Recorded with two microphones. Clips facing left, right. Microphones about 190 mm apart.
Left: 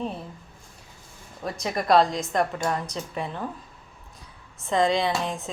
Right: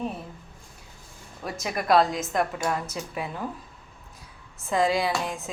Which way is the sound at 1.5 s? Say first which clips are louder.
Left 1 dB; 5° right (ahead or behind).